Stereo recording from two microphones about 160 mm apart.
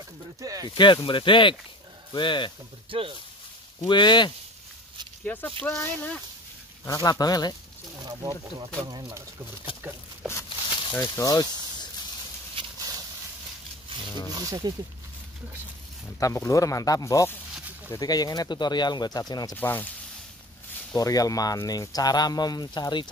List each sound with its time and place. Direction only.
0.4 s speech: 20° right (ahead or behind)
0.7 s speech: 30° left (ahead or behind)
2.9 s speech: 35° right (ahead or behind)
3.8 s speech: 30° left (ahead or behind)
5.2 s speech: 10° left (ahead or behind)
6.8 s speech: 25° left (ahead or behind)
8.0 s speech: 25° right (ahead or behind)
10.9 s speech: 20° left (ahead or behind)
12.7 s a sound: 25° right (ahead or behind)
14.3 s speech: 25° right (ahead or behind)
16.2 s speech: 20° left (ahead or behind)
19.5 s speech: 10° left (ahead or behind)
20.9 s speech: 20° left (ahead or behind)